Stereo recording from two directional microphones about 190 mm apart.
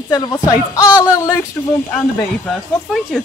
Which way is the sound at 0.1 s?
20° left (ahead or behind).